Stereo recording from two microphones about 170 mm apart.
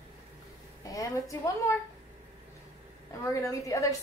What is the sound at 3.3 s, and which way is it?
Speech, 20° left (ahead or behind).